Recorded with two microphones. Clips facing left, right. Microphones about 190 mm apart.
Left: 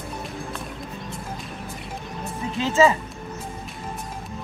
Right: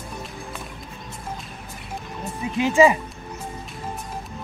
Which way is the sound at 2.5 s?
15° right (ahead or behind).